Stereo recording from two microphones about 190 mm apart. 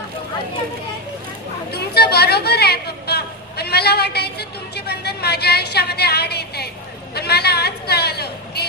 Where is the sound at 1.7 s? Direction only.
55° left (ahead or behind).